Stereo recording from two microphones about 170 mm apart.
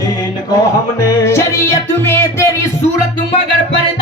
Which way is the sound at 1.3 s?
15° left (ahead or behind).